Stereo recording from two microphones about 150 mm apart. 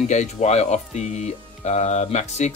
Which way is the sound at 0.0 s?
50° left (ahead or behind).